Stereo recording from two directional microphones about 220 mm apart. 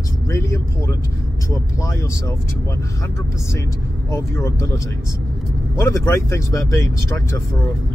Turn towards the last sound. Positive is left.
turn(degrees=15)  # may be behind; listen again after turning